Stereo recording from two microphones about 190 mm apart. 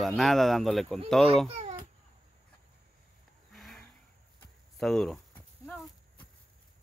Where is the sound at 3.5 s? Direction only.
Centre (ahead or behind).